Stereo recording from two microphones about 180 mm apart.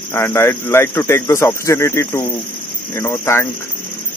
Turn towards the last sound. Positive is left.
turn(degrees=15)  # may be behind; listen again after turning